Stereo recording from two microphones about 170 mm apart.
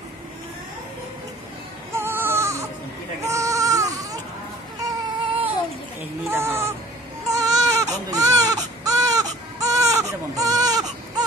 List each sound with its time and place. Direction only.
2.0 s music: 15° right (ahead or behind)
3.3 s baby cry: 20° right (ahead or behind)
4.8 s baby cry: 30° right (ahead or behind)
6.3 s a sound: 15° right (ahead or behind)
7.2 s baby cry: 20° right (ahead or behind)